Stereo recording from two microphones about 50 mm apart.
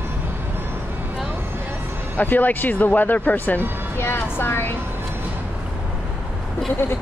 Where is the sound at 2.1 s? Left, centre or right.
Left.